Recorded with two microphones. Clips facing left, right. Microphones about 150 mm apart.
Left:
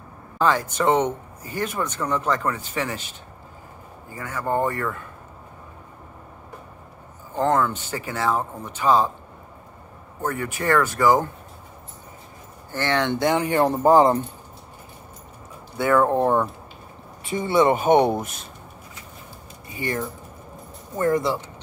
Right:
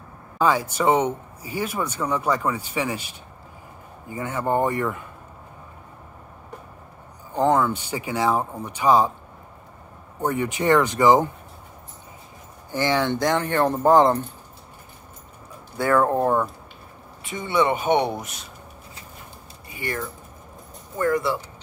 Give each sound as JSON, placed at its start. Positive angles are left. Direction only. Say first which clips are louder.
{"t": 0.4, "sound": "speech", "louder": "even", "side_deg": -10}
{"t": 4.1, "sound": "speech", "louder": "right 2 dB", "side_deg": -25}
{"t": 7.3, "sound": "speech", "louder": "right 1 dB", "side_deg": -10}
{"t": 10.2, "sound": "speech", "louder": "right 3 dB", "side_deg": -15}
{"t": 12.7, "sound": "speech", "louder": "right 1 dB", "side_deg": -10}
{"t": 13.1, "sound": "speech", "louder": "left 1 dB", "side_deg": 5}
{"t": 16.1, "sound": "speech", "louder": "left 1 dB", "side_deg": 15}
{"t": 17.2, "sound": "speech", "louder": "left 3 dB", "side_deg": 30}
{"t": 19.7, "sound": "speech", "louder": "left 3 dB", "side_deg": 25}